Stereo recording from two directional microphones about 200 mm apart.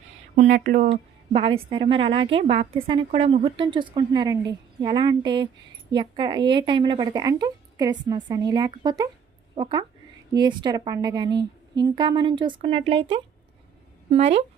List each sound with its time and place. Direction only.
0.3 s speech: 35° right (ahead or behind)
0.9 s speech: 30° right (ahead or behind)